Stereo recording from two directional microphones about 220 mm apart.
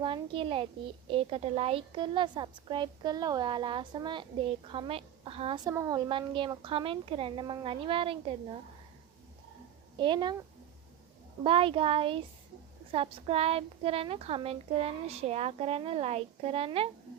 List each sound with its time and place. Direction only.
0.0 s a woman's voice: 25° right (ahead or behind)
5.7 s a woman's voice: 15° right (ahead or behind)
10.0 s a woman's voice: 20° right (ahead or behind)
11.4 s a woman's voice: 25° right (ahead or behind)